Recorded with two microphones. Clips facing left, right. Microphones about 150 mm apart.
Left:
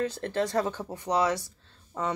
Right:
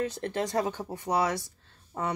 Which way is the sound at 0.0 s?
15° right (ahead or behind).